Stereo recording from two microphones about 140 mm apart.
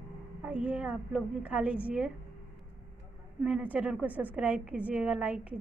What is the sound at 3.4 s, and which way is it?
A woman's voice, 10° right (ahead or behind).